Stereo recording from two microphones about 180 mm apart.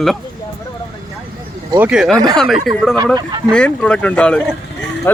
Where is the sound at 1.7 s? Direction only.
5° right (ahead or behind).